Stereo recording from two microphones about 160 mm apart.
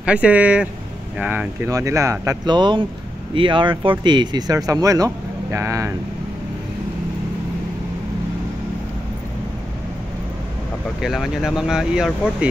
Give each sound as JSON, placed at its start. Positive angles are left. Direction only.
{"t": 0.0, "sound": "speech", "side_deg": -10}
{"t": 1.7, "sound": "speech", "side_deg": -20}
{"t": 11.0, "sound": "speech", "side_deg": 0}